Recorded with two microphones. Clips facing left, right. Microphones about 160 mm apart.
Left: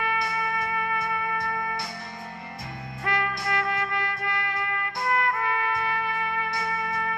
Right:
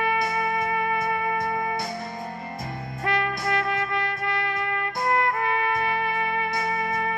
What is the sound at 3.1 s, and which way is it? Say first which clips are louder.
Music: right 3 dB; 25° right (ahead or behind).